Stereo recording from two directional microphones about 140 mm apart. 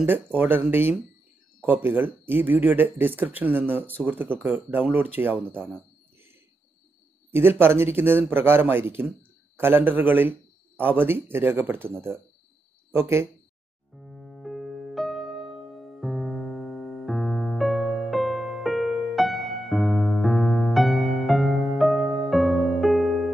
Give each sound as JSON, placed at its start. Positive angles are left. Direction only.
{"t": 0.0, "sound": "speech", "side_deg": -15}
{"t": 7.2, "sound": "speech", "side_deg": -15}
{"t": 13.9, "sound": "music", "side_deg": 0}